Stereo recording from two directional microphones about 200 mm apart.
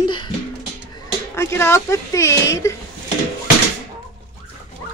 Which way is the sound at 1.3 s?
15° left (ahead or behind).